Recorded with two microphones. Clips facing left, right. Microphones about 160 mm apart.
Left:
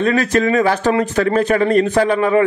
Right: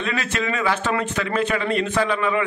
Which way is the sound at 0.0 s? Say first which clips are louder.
Left 10 dB; 40° left (ahead or behind).